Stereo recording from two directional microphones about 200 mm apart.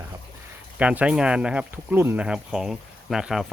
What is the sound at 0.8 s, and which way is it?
Speech, 5° right (ahead or behind).